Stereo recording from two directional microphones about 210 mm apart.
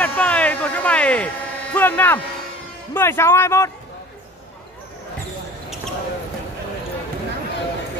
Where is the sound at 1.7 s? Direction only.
10° left (ahead or behind).